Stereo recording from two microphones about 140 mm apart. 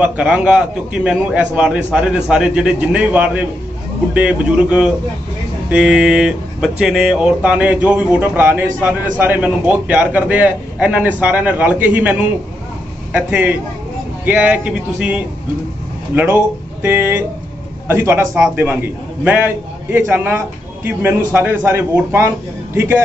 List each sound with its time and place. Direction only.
0.0 s a man's voice: 10° right (ahead or behind)